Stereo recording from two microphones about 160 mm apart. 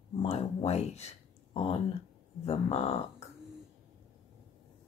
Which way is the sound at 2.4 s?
40° left (ahead or behind).